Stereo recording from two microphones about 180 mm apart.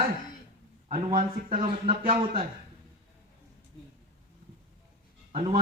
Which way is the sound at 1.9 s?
30° right (ahead or behind).